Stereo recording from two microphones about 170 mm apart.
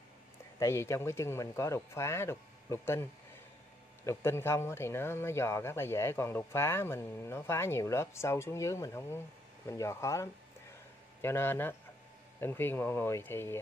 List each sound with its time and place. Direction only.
0.6 s speech: 15° left (ahead or behind)